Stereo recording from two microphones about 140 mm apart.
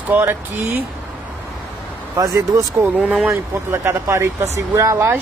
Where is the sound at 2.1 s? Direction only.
25° right (ahead or behind).